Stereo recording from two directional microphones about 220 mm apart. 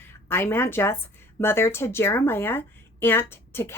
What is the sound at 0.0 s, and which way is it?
A woman's voice, 10° left (ahead or behind).